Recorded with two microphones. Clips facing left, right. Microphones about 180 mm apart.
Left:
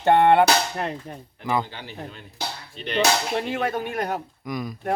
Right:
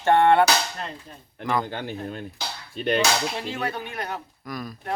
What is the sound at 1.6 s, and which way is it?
A man's voice, 50° right (ahead or behind).